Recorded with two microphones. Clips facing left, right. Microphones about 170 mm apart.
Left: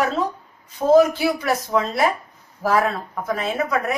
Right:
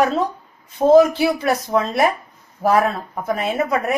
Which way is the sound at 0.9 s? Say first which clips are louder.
Right 3 dB; 25° right (ahead or behind).